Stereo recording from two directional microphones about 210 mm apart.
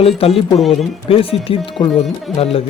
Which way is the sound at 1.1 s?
25° left (ahead or behind).